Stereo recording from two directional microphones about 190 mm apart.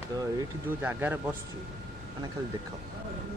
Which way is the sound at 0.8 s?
10° right (ahead or behind).